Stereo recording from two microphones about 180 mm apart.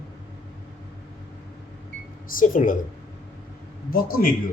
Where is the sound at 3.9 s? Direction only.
55° left (ahead or behind).